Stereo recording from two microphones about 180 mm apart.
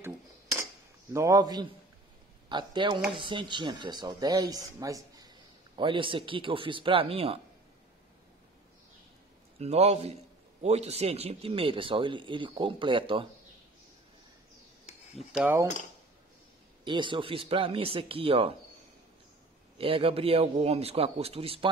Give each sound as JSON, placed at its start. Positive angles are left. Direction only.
{"t": 1.1, "sound": "speech", "side_deg": -15}
{"t": 9.6, "sound": "a man's voice", "side_deg": -35}
{"t": 15.1, "sound": "mechanisms", "side_deg": -5}
{"t": 16.8, "sound": "a man's voice", "side_deg": -25}
{"t": 19.8, "sound": "a man's voice", "side_deg": -30}